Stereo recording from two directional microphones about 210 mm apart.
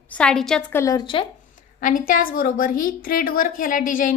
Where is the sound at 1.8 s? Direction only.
40° left (ahead or behind).